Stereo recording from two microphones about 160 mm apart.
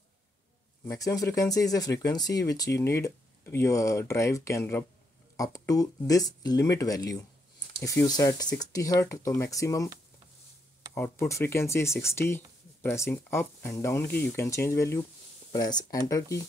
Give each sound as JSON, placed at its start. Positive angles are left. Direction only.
{"t": 0.8, "sound": "speech", "side_deg": 20}
{"t": 11.0, "sound": "speech", "side_deg": 15}